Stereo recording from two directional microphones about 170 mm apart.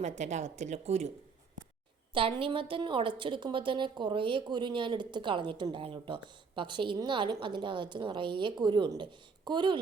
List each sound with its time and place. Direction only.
0.0 s speech: 45° right (ahead or behind)
2.1 s a woman's voice: 30° right (ahead or behind)